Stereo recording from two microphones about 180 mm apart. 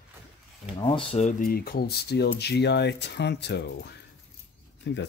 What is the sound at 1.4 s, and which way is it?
Speech, 55° left (ahead or behind).